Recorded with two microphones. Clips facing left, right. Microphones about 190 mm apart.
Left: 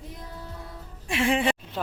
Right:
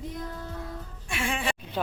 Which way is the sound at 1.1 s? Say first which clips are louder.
Left 7 dB; 30° left (ahead or behind).